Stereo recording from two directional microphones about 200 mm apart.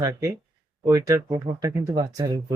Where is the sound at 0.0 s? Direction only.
15° right (ahead or behind).